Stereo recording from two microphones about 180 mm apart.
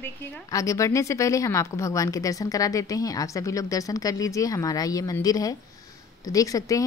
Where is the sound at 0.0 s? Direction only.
20° left (ahead or behind).